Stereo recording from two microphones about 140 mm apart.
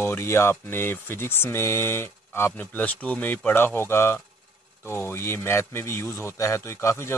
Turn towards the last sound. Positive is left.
turn(degrees=20)  # may be behind; listen again after turning